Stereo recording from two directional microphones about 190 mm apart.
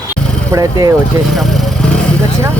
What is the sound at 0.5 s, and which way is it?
Speech, 20° right (ahead or behind).